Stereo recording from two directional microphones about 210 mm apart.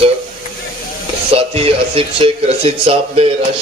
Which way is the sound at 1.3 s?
25° right (ahead or behind).